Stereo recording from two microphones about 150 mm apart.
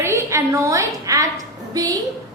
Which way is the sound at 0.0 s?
20° right (ahead or behind).